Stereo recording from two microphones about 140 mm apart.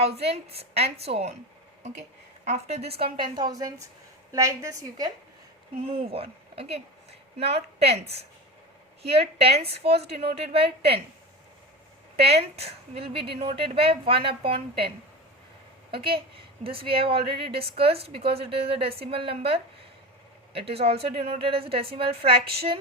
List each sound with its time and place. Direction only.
0.0 s a woman's voice: 45° right (ahead or behind)
2.4 s a woman's voice: 50° right (ahead or behind); by 5.1 s 25° right (ahead or behind)
6.1 s a woman's voice: 45° right (ahead or behind)
12.1 s a woman's voice: 45° right (ahead or behind)
15.9 s a woman's voice: 40° right (ahead or behind)